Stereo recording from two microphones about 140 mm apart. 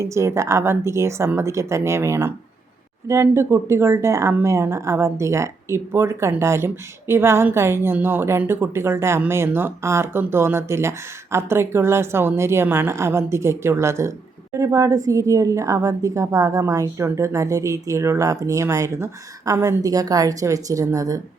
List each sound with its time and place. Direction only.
0.0 s a woman's voice: 20° right (ahead or behind)